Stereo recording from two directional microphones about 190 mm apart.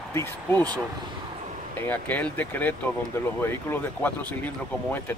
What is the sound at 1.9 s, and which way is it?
Speech, 10° left (ahead or behind).